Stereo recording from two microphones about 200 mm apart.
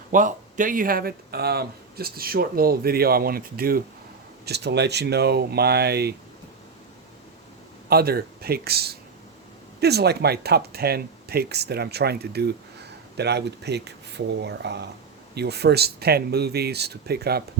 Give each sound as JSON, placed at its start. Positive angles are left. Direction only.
{"t": 0.1, "sound": "speech", "side_deg": -40}
{"t": 7.9, "sound": "speech", "side_deg": -50}